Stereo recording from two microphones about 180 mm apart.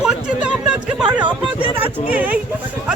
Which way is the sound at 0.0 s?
5° right (ahead or behind).